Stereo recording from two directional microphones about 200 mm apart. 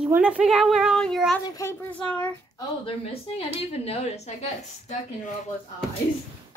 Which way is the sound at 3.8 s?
30° left (ahead or behind).